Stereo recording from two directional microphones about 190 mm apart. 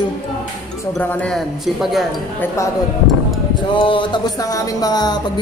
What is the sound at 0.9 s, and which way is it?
Speech, 5° left (ahead or behind).